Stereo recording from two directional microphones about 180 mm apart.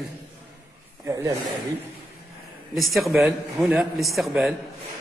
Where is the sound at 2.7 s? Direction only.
Centre (ahead or behind).